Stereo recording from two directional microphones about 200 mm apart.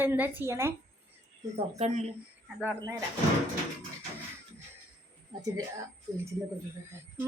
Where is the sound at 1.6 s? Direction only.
35° right (ahead or behind).